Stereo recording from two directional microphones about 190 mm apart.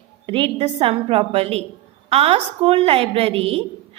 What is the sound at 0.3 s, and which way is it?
A woman's voice, 30° right (ahead or behind).